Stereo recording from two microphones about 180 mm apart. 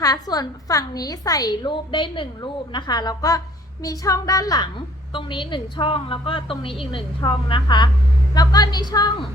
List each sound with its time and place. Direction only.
0.0 s a woman's voice: 20° left (ahead or behind)